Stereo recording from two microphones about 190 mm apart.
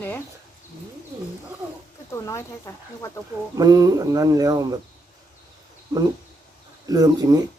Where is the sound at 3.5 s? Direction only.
20° right (ahead or behind).